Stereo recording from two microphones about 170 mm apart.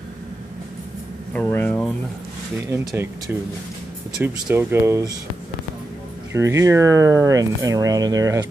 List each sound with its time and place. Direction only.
1.3 s a sound: 10° left (ahead or behind)
2.9 s speech: 15° right (ahead or behind)
6.3 s speech: 15° right (ahead or behind)